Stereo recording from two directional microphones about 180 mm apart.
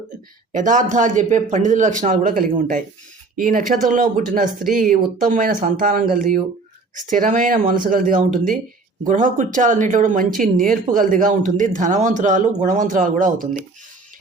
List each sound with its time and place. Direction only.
0.5 s speech: 45° right (ahead or behind)